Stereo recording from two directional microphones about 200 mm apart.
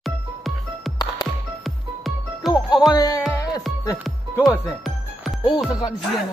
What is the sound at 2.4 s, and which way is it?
Music, centre (ahead or behind).